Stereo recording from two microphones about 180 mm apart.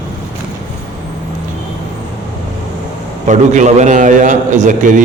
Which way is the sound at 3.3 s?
45° right (ahead or behind).